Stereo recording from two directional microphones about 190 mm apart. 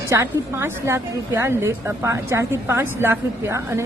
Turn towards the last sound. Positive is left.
turn(degrees=-15)  # may be behind; listen again after turning